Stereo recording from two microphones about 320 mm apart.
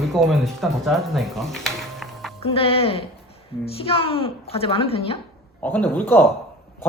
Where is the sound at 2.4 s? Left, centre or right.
Centre.